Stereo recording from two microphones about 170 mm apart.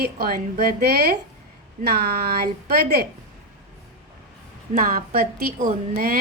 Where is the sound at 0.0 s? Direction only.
65° right (ahead or behind).